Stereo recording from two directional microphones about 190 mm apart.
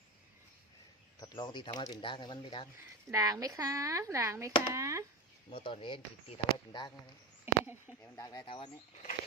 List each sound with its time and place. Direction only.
1.2 s speech: 20° left (ahead or behind)
3.1 s speech: 15° right (ahead or behind)
5.5 s speech: 30° left (ahead or behind)
7.4 s a sound: 10° right (ahead or behind)
8.0 s speech: 15° left (ahead or behind)